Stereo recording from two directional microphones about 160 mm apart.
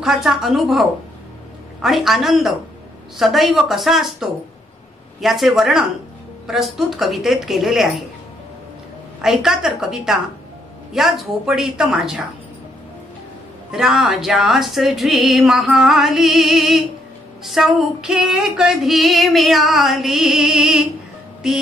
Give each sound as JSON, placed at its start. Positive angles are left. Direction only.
{"t": 0.0, "sound": "female singing", "side_deg": 0}
{"t": 9.2, "sound": "female singing", "side_deg": 0}
{"t": 13.7, "sound": "female singing", "side_deg": -5}